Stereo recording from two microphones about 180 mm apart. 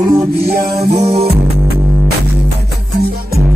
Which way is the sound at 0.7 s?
30° right (ahead or behind).